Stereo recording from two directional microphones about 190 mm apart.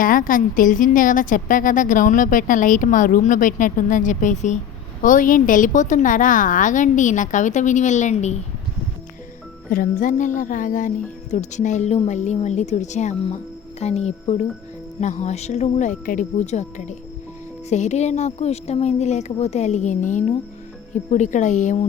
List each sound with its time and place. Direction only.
0.0 s speech: 45° left (ahead or behind)
9.6 s speech: 50° left (ahead or behind)